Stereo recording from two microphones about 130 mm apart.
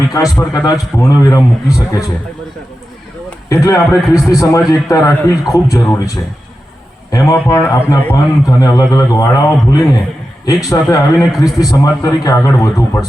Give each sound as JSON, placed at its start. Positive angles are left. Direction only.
{"t": 0.1, "sound": "a man's voice", "side_deg": 25}
{"t": 3.5, "sound": "a man's voice", "side_deg": 25}
{"t": 7.1, "sound": "a man's voice", "side_deg": 25}